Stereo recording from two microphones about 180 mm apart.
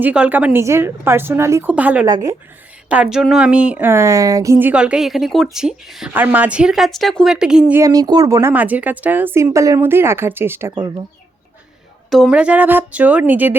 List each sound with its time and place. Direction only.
0.0 s speech: 10° right (ahead or behind)
2.0 s a woman's voice: 20° right (ahead or behind)
2.9 s speech: 5° right (ahead or behind)
4.6 s speech: 5° right (ahead or behind)
7.8 s speech: 20° right (ahead or behind)
12.1 s speech: 5° right (ahead or behind)